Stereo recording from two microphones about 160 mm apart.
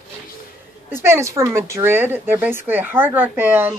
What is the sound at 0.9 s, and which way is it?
Speech, 15° right (ahead or behind).